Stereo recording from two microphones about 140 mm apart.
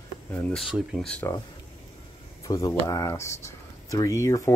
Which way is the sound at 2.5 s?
20° left (ahead or behind).